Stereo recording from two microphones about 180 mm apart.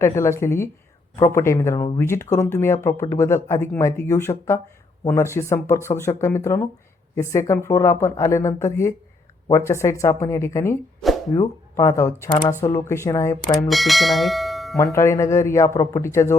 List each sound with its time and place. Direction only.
0.0 s speech: 15° left (ahead or behind)
13.7 s speech: centre (ahead or behind)
14.9 s speech: 15° left (ahead or behind)